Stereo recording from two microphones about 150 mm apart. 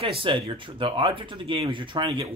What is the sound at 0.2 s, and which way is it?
Speech, 35° right (ahead or behind).